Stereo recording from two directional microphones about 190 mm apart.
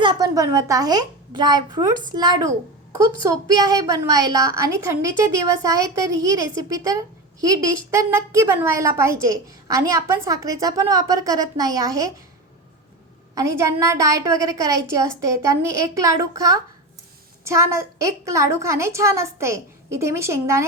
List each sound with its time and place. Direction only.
0.0 s a woman's voice: 20° right (ahead or behind)
13.6 s a woman's voice: 15° right (ahead or behind)